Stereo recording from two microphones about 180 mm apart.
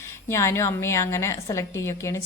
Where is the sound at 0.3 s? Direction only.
15° left (ahead or behind).